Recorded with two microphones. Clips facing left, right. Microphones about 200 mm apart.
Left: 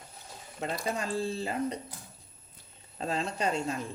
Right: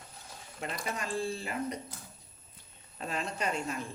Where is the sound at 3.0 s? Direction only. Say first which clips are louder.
Left 4 dB; 30° left (ahead or behind).